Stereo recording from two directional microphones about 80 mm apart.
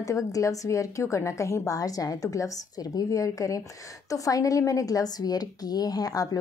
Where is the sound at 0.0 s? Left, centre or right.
Left.